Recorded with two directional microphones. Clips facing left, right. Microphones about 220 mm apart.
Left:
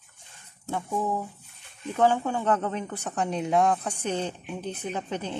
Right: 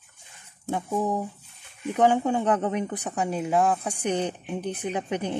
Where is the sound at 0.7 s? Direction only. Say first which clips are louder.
Right 2 dB; 15° right (ahead or behind).